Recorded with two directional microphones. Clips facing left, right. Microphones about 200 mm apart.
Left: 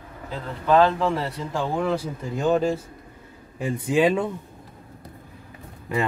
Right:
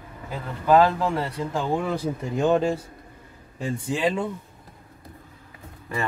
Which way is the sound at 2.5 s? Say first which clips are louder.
Left 1 dB; 5° left (ahead or behind).